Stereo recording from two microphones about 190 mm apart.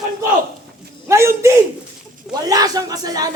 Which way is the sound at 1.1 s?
15° right (ahead or behind).